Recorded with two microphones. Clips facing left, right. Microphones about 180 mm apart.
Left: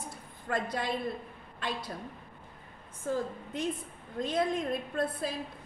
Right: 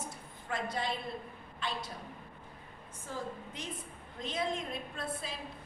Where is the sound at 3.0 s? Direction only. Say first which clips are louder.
Left 8 dB; 45° left (ahead or behind).